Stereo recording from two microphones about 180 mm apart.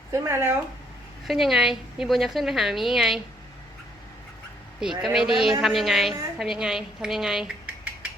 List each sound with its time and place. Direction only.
0.1 s speech: 15° right (ahead or behind)
1.3 s a woman's voice: centre (ahead or behind)
4.8 s a woman's voice: 5° right (ahead or behind)